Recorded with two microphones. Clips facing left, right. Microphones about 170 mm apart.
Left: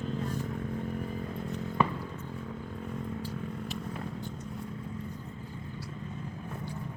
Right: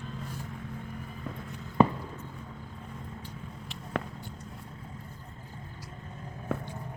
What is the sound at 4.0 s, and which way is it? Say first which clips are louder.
Vehicle: right 5 dB; 85° right.